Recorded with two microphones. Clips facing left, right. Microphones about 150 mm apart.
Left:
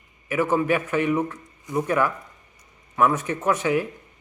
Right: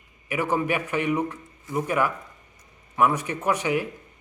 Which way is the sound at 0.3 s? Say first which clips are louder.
Left 3 dB; 15° right (ahead or behind).